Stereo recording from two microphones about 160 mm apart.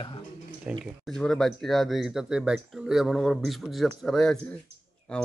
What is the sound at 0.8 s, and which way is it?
Speech, 5° left (ahead or behind).